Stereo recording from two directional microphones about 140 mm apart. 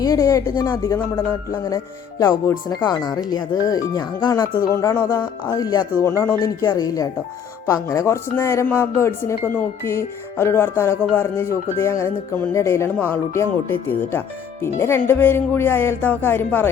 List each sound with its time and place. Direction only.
0.0 s speech: 25° left (ahead or behind)